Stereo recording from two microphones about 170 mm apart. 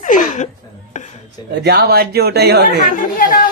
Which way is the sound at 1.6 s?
70° right (ahead or behind).